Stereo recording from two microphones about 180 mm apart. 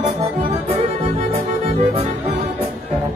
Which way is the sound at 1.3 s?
35° right (ahead or behind).